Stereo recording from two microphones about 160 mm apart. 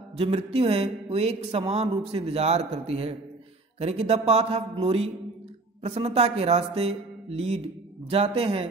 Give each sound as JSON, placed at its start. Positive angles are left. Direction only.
{"t": 0.2, "sound": "speech", "side_deg": -35}